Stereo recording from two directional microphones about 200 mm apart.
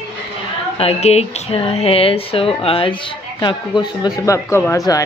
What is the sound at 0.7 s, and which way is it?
Speech, 30° left (ahead or behind).